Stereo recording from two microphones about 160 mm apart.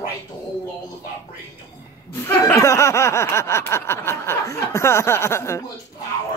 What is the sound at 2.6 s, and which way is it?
Snicker, 20° left (ahead or behind).